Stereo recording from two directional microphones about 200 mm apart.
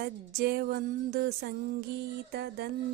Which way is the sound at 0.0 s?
45° right (ahead or behind).